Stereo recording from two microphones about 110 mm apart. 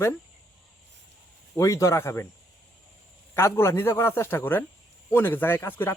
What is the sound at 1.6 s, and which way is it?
Speech, 30° left (ahead or behind).